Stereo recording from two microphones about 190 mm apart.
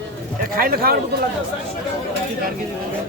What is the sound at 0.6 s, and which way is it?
Speech, 50° right (ahead or behind).